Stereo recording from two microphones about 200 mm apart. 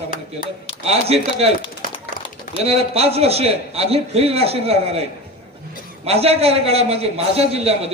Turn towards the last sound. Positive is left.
turn(degrees=-30)  # may be behind; listen again after turning